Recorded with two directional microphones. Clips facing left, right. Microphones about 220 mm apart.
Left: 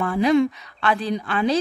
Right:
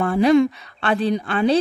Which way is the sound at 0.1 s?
30° right (ahead or behind).